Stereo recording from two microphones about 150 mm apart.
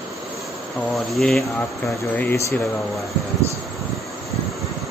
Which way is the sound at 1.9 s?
15° left (ahead or behind).